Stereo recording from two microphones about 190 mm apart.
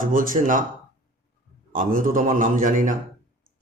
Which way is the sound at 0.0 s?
45° right (ahead or behind).